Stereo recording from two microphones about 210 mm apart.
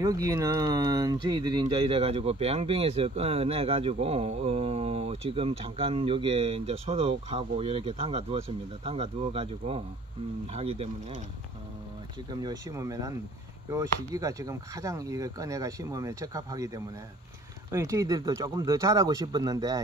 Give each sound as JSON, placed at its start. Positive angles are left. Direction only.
{"t": 0.0, "sound": "speech", "side_deg": -15}
{"t": 12.3, "sound": "speech", "side_deg": -20}